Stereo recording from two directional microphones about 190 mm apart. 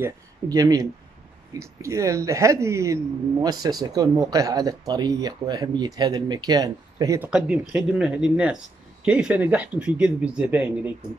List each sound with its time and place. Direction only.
0.0 s speech: 20° right (ahead or behind)
7.2 s speech: 5° right (ahead or behind)